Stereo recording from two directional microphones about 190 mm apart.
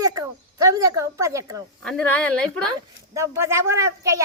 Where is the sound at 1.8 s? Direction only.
5° left (ahead or behind).